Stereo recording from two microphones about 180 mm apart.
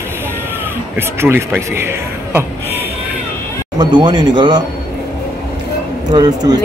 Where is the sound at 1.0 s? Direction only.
15° right (ahead or behind).